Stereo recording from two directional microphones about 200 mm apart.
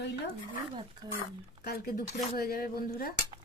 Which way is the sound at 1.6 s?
50° left (ahead or behind).